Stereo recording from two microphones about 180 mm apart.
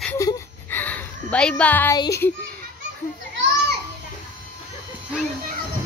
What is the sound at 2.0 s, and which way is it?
Speech, 15° left (ahead or behind).